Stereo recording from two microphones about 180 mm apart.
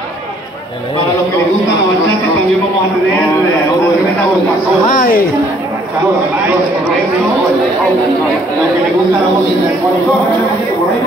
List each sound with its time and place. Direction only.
4.9 s speech: 50° left (ahead or behind)